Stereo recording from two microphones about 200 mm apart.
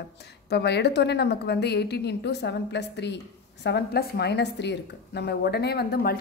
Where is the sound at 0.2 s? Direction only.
55° left (ahead or behind).